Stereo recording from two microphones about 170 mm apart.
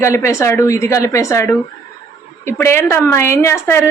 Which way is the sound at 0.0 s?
15° left (ahead or behind).